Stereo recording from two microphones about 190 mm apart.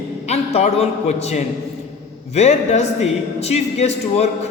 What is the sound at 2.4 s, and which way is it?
A man's voice, 35° left (ahead or behind).